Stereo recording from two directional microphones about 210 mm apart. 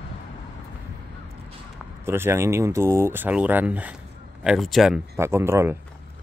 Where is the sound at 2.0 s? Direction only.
10° right (ahead or behind).